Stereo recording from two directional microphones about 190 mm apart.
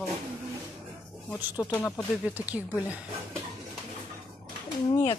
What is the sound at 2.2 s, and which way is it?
Speech, 10° right (ahead or behind).